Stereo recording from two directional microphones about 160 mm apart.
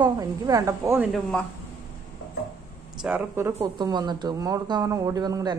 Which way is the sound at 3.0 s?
15° right (ahead or behind).